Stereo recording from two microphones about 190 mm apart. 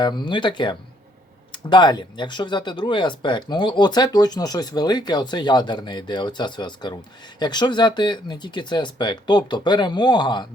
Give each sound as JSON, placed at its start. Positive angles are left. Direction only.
{"t": 0.0, "sound": "speech", "side_deg": 25}